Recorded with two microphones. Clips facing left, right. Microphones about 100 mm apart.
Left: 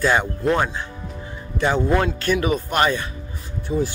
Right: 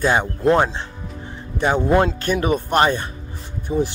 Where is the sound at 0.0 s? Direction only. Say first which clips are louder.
Right 2 dB; 20° right (ahead or behind).